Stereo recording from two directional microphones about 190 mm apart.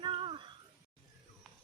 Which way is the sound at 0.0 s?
25° right (ahead or behind).